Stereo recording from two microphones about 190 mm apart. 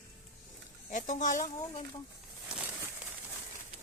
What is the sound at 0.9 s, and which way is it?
Speech, 40° left (ahead or behind).